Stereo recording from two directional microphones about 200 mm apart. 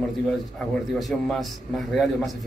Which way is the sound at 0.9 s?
Centre (ahead or behind).